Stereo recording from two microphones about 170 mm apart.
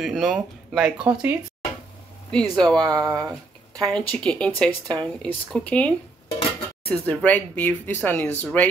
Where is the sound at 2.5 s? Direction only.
5° left (ahead or behind).